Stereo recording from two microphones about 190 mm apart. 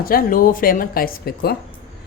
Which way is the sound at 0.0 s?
50° left (ahead or behind).